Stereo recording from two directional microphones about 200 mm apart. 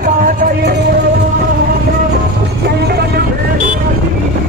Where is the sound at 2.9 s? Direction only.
50° right (ahead or behind).